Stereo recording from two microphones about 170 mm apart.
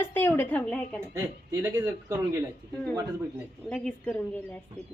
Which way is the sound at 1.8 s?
20° right (ahead or behind).